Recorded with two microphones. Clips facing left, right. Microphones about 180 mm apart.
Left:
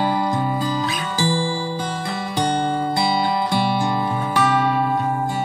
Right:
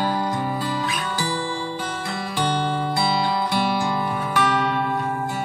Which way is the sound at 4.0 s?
25° left (ahead or behind).